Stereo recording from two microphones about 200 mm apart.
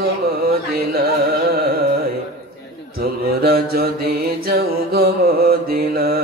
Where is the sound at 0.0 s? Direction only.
50° right (ahead or behind).